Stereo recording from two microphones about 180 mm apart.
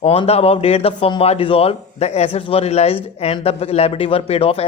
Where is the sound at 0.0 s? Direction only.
35° left (ahead or behind).